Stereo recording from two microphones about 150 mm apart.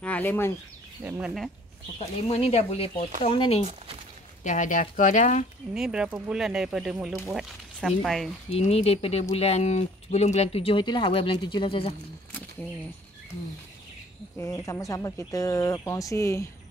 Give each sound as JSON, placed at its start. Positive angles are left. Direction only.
{"t": 0.0, "sound": "speech", "side_deg": 10}
{"t": 1.0, "sound": "speech", "side_deg": -10}
{"t": 2.0, "sound": "speech", "side_deg": 45}
{"t": 3.6, "sound": "speech", "side_deg": -40}
{"t": 4.4, "sound": "speech", "side_deg": 55}
{"t": 5.8, "sound": "speech", "side_deg": -5}
{"t": 8.5, "sound": "speech", "side_deg": 40}
{"t": 14.4, "sound": "speech", "side_deg": 20}